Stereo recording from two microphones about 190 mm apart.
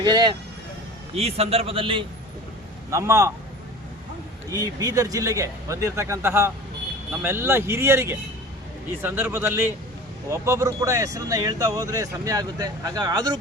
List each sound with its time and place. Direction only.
0.0 s speech: 20° right (ahead or behind)
1.1 s speech: 30° right (ahead or behind)
2.9 s speech: 15° right (ahead or behind)
4.5 s speech: 20° right (ahead or behind)